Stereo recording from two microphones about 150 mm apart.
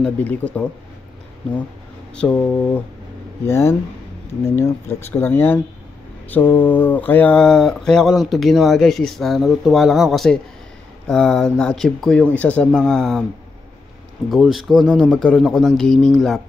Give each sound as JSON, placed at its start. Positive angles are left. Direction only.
{"t": 0.0, "sound": "speech", "side_deg": 10}
{"t": 2.1, "sound": "speech", "side_deg": 10}
{"t": 14.3, "sound": "speech", "side_deg": 0}